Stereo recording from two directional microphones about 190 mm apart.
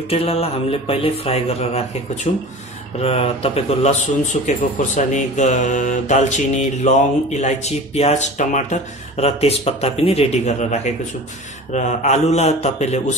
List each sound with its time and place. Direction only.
0.1 s speech: 30° left (ahead or behind)